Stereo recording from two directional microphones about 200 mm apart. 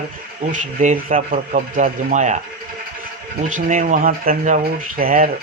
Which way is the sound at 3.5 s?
40° right (ahead or behind).